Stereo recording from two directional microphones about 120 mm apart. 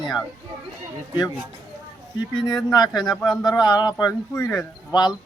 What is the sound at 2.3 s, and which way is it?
Speech, 35° left (ahead or behind).